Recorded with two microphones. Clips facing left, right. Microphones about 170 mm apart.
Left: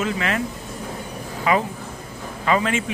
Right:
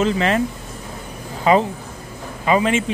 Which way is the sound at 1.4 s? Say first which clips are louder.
Right 5 dB; 30° right (ahead or behind).